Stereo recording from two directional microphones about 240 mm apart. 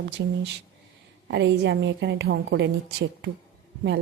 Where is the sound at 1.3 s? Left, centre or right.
Right.